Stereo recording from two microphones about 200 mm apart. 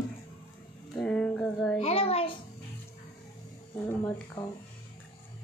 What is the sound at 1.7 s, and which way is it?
Speech, 30° left (ahead or behind).